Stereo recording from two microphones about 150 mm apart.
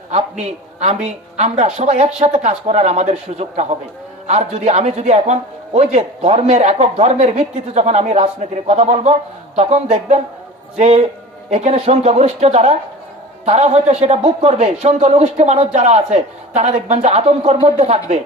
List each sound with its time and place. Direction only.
0.8 s a man's voice: 50° right (ahead or behind)